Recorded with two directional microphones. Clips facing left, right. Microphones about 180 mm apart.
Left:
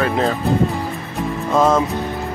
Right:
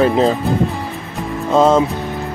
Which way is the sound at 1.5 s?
25° right (ahead or behind).